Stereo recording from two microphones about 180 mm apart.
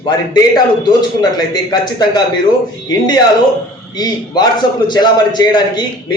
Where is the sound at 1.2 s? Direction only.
20° left (ahead or behind).